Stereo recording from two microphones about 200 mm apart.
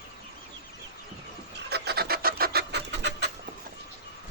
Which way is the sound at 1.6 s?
55° right (ahead or behind).